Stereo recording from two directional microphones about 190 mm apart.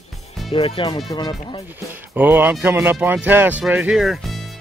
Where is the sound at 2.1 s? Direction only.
10° right (ahead or behind).